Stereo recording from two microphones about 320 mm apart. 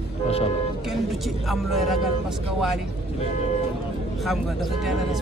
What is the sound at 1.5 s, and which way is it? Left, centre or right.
Speech, centre.